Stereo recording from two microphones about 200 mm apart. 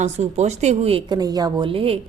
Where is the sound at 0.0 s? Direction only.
35° right (ahead or behind).